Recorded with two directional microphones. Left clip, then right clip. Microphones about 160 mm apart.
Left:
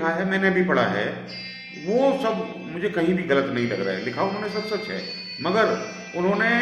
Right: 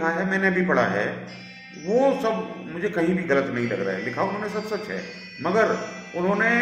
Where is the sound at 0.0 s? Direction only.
5° left (ahead or behind).